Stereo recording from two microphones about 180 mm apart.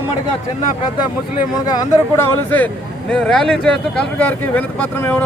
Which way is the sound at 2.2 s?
10° left (ahead or behind).